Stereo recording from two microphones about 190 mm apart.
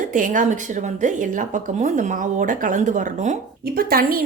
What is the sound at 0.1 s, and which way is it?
Speech, 45° right (ahead or behind).